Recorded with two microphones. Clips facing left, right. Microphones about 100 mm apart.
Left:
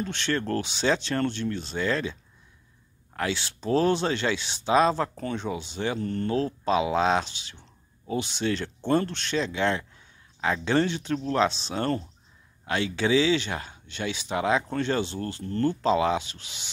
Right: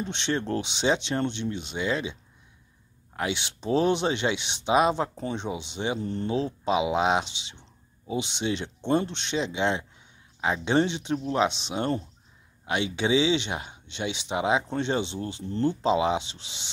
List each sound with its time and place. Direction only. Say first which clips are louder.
0.0 s speech: even; 20° right (ahead or behind)
3.2 s speech: left 1 dB; 20° right (ahead or behind)